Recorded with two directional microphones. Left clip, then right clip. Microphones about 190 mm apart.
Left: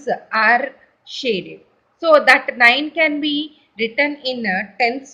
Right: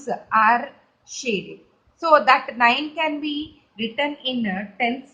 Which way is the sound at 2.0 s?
10° left (ahead or behind).